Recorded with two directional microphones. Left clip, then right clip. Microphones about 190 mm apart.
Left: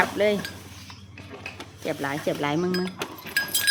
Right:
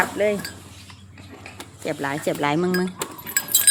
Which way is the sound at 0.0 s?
Centre (ahead or behind).